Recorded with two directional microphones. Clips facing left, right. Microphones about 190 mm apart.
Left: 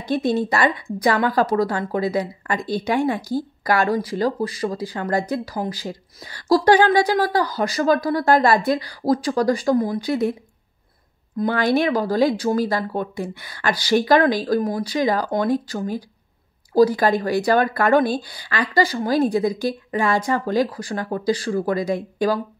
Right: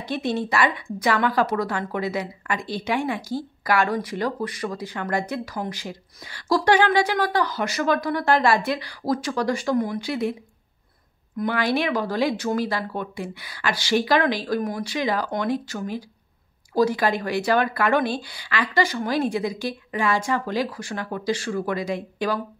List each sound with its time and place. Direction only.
0.5 s speech: 40° left (ahead or behind)
11.5 s speech: 45° left (ahead or behind)